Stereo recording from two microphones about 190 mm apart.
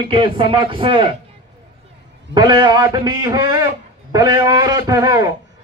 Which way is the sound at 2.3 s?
20° right (ahead or behind).